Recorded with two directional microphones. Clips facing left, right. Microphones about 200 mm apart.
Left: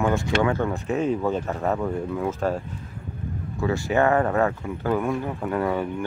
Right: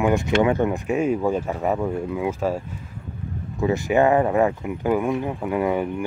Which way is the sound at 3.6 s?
15° right (ahead or behind).